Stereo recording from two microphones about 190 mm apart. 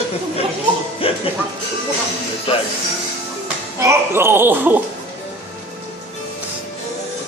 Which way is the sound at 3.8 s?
15° right (ahead or behind).